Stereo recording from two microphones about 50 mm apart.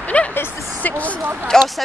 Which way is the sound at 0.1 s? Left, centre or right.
Left.